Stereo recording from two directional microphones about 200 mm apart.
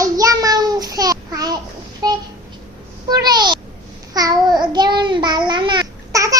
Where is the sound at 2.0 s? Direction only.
20° right (ahead or behind).